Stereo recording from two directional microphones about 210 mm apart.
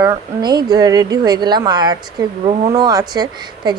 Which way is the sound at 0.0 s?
20° right (ahead or behind).